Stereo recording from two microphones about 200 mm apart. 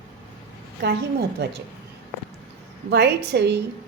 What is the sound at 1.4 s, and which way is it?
Speech, 60° right (ahead or behind).